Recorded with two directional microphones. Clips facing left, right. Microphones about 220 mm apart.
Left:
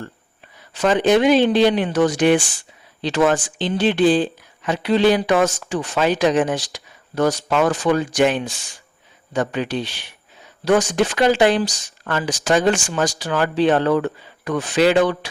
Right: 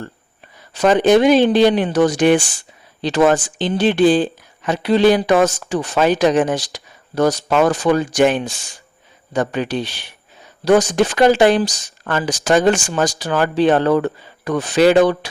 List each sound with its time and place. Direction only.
0.8 s speech: 45° right (ahead or behind)